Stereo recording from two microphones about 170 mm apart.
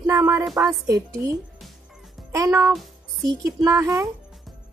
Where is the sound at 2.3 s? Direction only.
20° right (ahead or behind).